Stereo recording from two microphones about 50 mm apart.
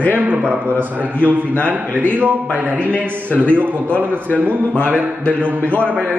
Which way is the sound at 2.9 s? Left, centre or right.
Left.